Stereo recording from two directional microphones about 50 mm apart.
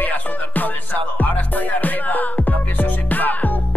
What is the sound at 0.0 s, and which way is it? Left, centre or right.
Music, left.